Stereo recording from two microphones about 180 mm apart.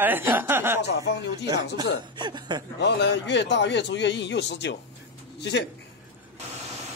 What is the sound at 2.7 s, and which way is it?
A man's voice, 70° left (ahead or behind).